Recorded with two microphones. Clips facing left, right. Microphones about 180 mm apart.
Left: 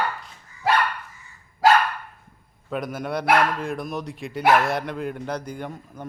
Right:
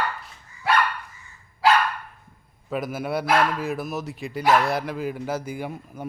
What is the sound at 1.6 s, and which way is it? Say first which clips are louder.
Dog: left 2 dB; 45° left (ahead or behind).